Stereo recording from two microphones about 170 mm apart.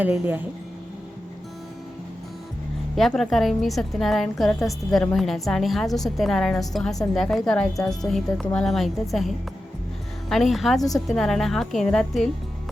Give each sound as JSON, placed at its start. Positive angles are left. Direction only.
{"t": 0.0, "sound": "speech", "side_deg": -10}
{"t": 2.9, "sound": "a woman's voice", "side_deg": 0}
{"t": 10.8, "sound": "a woman's voice", "side_deg": 20}
{"t": 11.0, "sound": "a woman's voice", "side_deg": 0}